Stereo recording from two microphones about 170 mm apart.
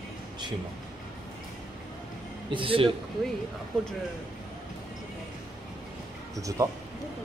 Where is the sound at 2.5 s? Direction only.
30° right (ahead or behind).